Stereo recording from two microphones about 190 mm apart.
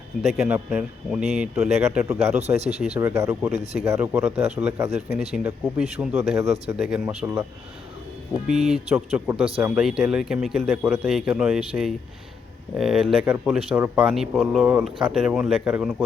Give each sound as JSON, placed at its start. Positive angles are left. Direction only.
{"t": 0.2, "sound": "speech", "side_deg": 0}
{"t": 2.6, "sound": "speech", "side_deg": -35}
{"t": 3.0, "sound": "speech", "side_deg": -10}
{"t": 8.4, "sound": "speech", "side_deg": 0}